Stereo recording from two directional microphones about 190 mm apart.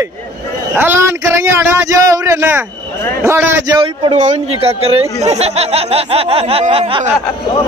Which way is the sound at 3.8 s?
35° right (ahead or behind).